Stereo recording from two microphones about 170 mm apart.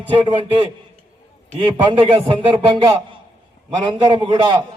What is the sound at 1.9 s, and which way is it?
Speech, 30° right (ahead or behind).